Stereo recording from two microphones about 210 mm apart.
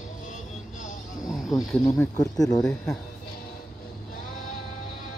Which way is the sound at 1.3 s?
Centre (ahead or behind).